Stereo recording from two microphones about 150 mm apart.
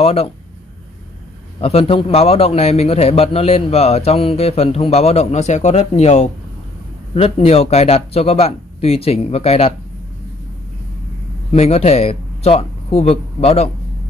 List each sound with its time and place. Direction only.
0.0 s speech: 40° left (ahead or behind)
1.6 s a man's voice: 40° left (ahead or behind)
11.5 s speech: 45° left (ahead or behind)